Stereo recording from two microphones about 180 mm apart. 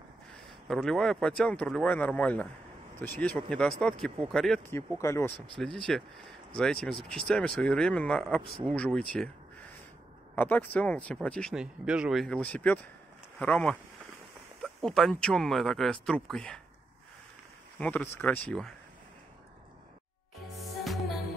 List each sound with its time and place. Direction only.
0.7 s speech: centre (ahead or behind)
5.0 s speech: 15° left (ahead or behind)
5.6 s speech: 5° left (ahead or behind)
10.3 s speech: 10° left (ahead or behind)
17.7 s speech: 10° left (ahead or behind)
20.8 s music: centre (ahead or behind)